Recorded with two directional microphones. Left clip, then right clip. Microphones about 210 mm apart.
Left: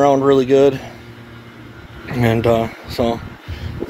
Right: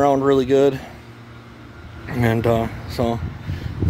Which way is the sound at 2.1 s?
15° right (ahead or behind).